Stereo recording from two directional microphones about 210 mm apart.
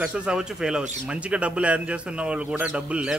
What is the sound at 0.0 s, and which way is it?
A man's voice, 5° right (ahead or behind).